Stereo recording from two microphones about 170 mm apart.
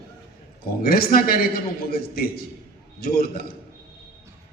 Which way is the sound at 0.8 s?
60° left (ahead or behind).